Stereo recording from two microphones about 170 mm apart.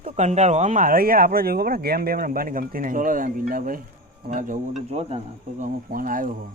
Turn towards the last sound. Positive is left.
turn(degrees=-55)  # may be behind; listen again after turning